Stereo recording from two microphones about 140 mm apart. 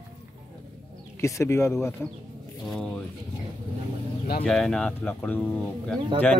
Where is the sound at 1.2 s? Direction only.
20° left (ahead or behind).